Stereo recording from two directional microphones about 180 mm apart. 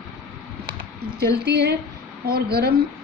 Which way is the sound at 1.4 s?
65° right (ahead or behind).